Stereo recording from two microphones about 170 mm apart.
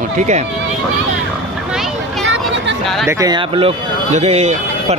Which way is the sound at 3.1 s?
20° right (ahead or behind).